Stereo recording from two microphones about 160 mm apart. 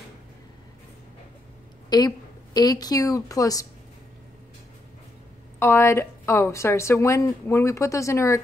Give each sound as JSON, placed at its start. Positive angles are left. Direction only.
{"t": 1.9, "sound": "a woman's voice", "side_deg": 25}
{"t": 5.6, "sound": "a woman's voice", "side_deg": 15}